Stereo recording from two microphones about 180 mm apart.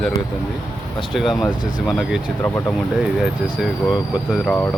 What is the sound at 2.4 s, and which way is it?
Speech, 15° left (ahead or behind).